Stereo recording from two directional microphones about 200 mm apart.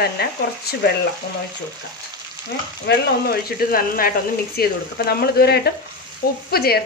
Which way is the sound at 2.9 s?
50° left (ahead or behind).